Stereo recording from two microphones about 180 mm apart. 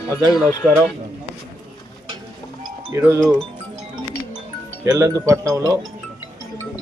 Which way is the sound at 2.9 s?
15° right (ahead or behind).